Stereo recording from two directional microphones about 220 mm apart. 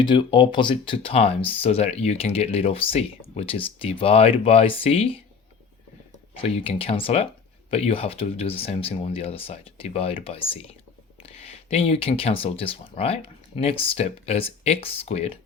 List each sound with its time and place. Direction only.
0.0 s speech: 20° left (ahead or behind)
6.3 s speech: 25° left (ahead or behind)